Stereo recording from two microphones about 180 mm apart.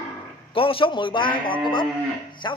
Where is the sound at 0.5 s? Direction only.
30° left (ahead or behind).